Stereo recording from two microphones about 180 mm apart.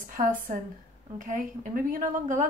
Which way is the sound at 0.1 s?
45° right (ahead or behind).